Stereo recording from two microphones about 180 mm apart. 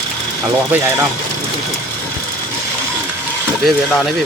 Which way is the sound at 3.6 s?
5° left (ahead or behind).